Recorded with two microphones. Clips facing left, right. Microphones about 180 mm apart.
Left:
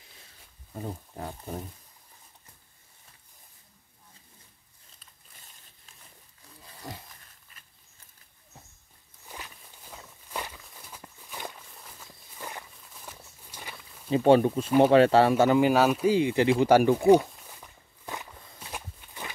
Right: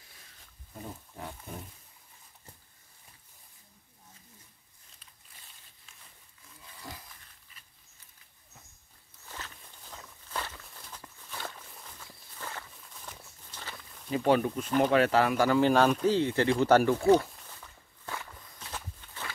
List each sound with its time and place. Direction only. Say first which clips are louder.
1.1 s speech: left 5 dB; 35° left (ahead or behind)
6.6 s a sound: left 4 dB; 35° left (ahead or behind)
9.2 s walk: left 1 dB; 15° left (ahead or behind)
12.8 s a sound: left 1 dB; 5° left (ahead or behind)
13.5 s pig: left 1 dB; 10° left (ahead or behind)
14.1 s speech: left 6 dB; 30° left (ahead or behind)
15.6 s speech: left 2 dB; 10° left (ahead or behind)
18.6 s walk: left 2 dB; 15° left (ahead or behind)